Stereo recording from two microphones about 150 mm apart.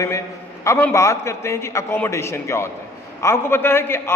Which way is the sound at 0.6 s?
20° left (ahead or behind).